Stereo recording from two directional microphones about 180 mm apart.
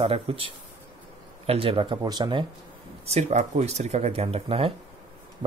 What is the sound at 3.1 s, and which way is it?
Speech, 40° right (ahead or behind).